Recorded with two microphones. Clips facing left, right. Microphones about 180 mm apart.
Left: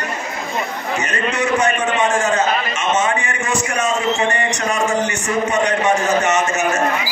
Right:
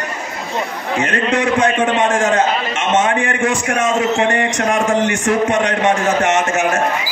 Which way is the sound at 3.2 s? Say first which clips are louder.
Right 4 dB; 55° right (ahead or behind).